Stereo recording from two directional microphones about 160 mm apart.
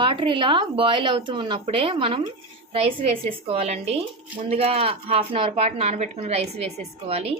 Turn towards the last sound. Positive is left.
turn(degrees=-40)  # may be behind; listen again after turning